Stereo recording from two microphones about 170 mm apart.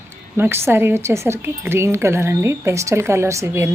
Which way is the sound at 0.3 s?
15° right (ahead or behind).